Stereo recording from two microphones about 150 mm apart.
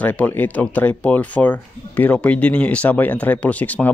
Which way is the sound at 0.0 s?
10° left (ahead or behind).